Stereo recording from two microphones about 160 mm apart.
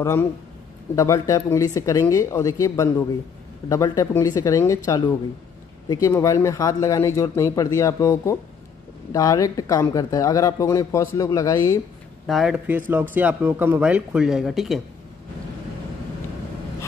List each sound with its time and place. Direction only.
0.0 s speech: 15° left (ahead or behind)
12.3 s speech: centre (ahead or behind)